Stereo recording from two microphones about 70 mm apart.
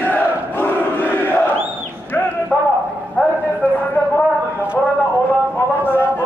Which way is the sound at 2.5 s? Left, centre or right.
Left.